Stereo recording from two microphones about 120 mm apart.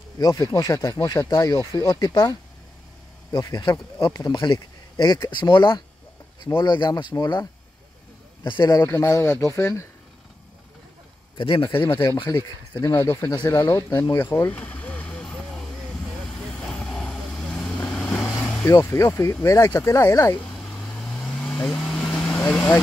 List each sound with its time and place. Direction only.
0.2 s speech: 35° left (ahead or behind)
8.5 s speech: 35° left (ahead or behind)
8.8 s speech: 25° left (ahead or behind)
11.3 s a man's voice: 45° left (ahead or behind)
12.8 s speech: 20° left (ahead or behind)
13.3 s speech: 40° left (ahead or behind)
14.1 s a sound: 20° left (ahead or behind)
16.3 s vehicle: 5° left (ahead or behind)
18.7 s speech: 25° left (ahead or behind)
20.7 s vehicle: 5° left (ahead or behind)